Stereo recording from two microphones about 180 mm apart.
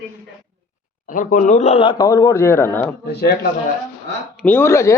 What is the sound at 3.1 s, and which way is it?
Speech, 60° left (ahead or behind).